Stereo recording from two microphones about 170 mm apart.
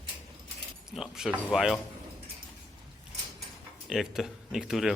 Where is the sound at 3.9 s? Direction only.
Centre (ahead or behind).